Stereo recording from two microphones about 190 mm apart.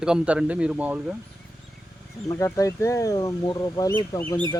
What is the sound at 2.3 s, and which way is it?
Speech, 15° left (ahead or behind).